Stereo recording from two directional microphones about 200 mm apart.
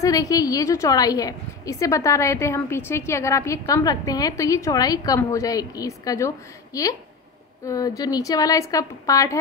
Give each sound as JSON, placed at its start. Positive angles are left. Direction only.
{"t": 0.0, "sound": "a woman's voice", "side_deg": 15}